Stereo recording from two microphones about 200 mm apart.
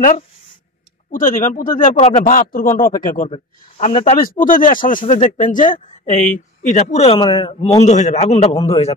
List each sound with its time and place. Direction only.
1.1 s speech: 40° left (ahead or behind)
3.3 s speech: 30° left (ahead or behind)
4.2 s speech: 45° left (ahead or behind)